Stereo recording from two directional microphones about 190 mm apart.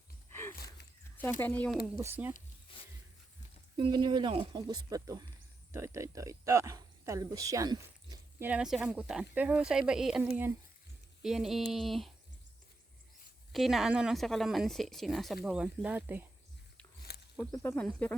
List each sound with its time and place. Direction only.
0.3 s gasp: 10° left (ahead or behind)
1.2 s speech: 10° left (ahead or behind)
2.0 s speech: 10° right (ahead or behind)
3.8 s a woman's voice: 25° right (ahead or behind); by 12.1 s centre (ahead or behind)
13.5 s a woman's voice: centre (ahead or behind)
17.1 s snake: 55° left (ahead or behind)
17.5 s speech: 15° left (ahead or behind)